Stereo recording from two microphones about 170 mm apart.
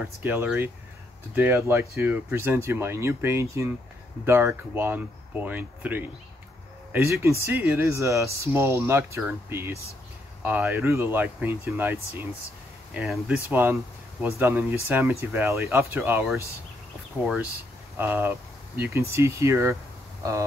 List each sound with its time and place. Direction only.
0.2 s speech: 10° right (ahead or behind)
17.9 s speech: 15° right (ahead or behind)